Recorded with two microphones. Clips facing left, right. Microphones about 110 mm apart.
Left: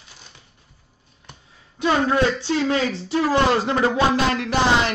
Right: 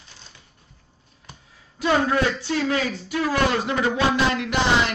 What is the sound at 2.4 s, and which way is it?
Speech, 30° left (ahead or behind).